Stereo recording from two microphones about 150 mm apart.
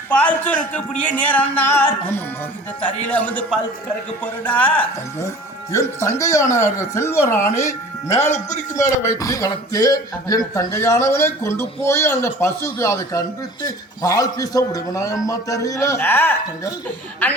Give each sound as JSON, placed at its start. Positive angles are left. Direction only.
{"t": 0.1, "sound": "a man's voice", "side_deg": 10}